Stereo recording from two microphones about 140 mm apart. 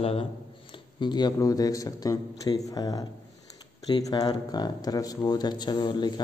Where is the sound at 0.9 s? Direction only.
30° left (ahead or behind).